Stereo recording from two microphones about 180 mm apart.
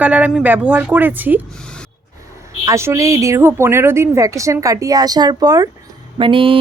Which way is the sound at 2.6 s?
15° right (ahead or behind).